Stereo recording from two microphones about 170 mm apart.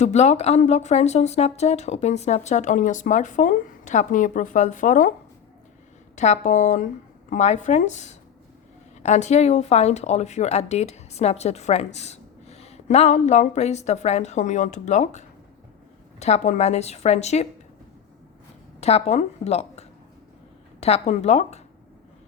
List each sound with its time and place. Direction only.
0.0 s speech: 40° left (ahead or behind)
6.1 s speech: 40° left (ahead or behind)
16.2 s speech: 40° left (ahead or behind)
18.8 s speech: 40° left (ahead or behind)
20.8 s speech: 40° left (ahead or behind)